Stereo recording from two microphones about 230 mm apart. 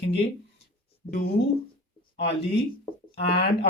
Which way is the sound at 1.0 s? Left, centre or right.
Left.